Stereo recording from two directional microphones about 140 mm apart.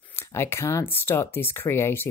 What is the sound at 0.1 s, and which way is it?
A woman's voice, 20° left (ahead or behind).